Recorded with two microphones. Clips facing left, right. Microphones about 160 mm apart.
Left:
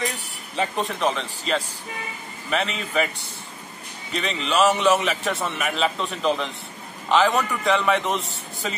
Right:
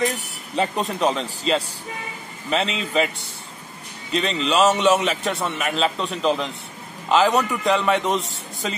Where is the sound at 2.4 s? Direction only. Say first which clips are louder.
Right 2 dB; 25° right (ahead or behind).